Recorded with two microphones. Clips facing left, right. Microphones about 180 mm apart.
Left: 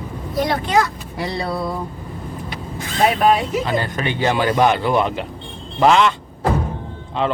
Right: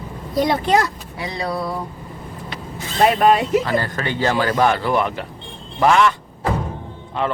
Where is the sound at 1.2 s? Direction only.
35° left (ahead or behind).